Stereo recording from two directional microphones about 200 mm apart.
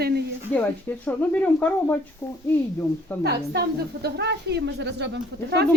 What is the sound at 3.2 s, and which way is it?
A woman's voice, 55° right (ahead or behind).